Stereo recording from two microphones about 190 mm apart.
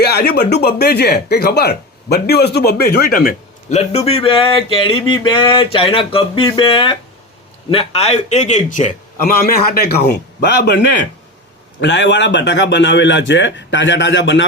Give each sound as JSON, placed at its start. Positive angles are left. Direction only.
{"t": 0.0, "sound": "speech", "side_deg": 55}
{"t": 3.7, "sound": "a sound", "side_deg": 35}
{"t": 7.7, "sound": "a man's voice", "side_deg": 30}
{"t": 11.8, "sound": "a man's voice", "side_deg": 65}